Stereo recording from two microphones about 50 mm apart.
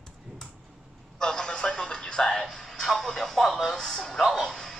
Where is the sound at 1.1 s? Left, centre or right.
Centre.